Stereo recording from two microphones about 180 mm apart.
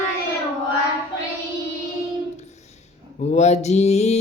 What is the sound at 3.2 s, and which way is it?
Mantra, 40° left (ahead or behind).